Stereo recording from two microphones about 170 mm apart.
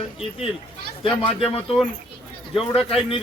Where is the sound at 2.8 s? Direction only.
35° left (ahead or behind).